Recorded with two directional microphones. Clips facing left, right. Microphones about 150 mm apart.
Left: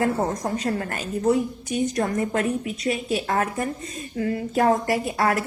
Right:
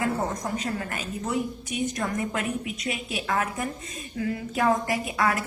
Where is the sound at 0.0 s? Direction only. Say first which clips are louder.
Left 4 dB; 35° left (ahead or behind).